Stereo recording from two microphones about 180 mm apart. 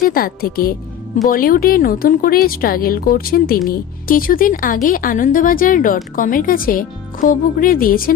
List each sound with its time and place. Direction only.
0.0 s speech: 55° left (ahead or behind)